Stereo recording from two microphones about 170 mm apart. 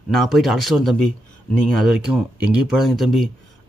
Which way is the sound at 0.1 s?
Centre (ahead or behind).